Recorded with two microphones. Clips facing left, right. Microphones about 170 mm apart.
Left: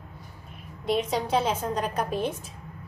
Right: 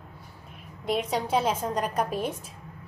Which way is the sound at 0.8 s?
5° right (ahead or behind).